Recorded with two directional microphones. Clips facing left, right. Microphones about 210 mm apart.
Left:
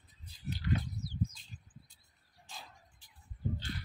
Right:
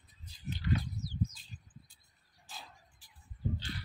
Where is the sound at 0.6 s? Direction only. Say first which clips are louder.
Right 1 dB; 55° left (ahead or behind).